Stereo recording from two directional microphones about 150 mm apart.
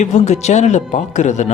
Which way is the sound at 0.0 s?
50° left (ahead or behind).